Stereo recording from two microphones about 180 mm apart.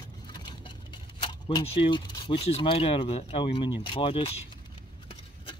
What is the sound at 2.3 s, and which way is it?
Speech, 35° left (ahead or behind).